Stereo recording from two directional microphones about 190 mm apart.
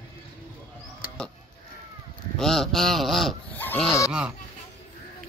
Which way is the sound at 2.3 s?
Centre (ahead or behind).